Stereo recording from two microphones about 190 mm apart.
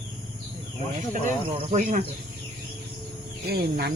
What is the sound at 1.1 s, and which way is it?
Speech, 40° right (ahead or behind).